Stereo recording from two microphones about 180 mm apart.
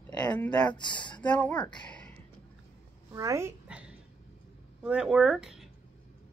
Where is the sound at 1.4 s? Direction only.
10° left (ahead or behind).